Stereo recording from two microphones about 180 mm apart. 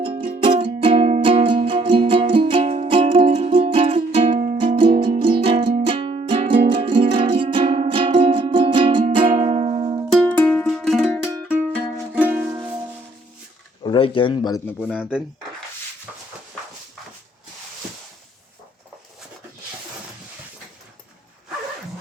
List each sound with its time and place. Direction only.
0.0 s music: 30° right (ahead or behind)
10.1 s music: 5° left (ahead or behind)
12.1 s music: 10° right (ahead or behind)
13.8 s speech: 30° left (ahead or behind)
14.8 s speech: 5° left (ahead or behind)